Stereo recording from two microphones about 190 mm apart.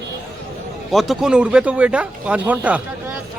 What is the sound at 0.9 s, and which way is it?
Speech, centre (ahead or behind).